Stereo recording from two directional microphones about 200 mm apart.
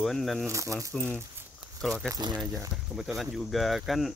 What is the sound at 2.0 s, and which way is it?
Speech, 20° right (ahead or behind).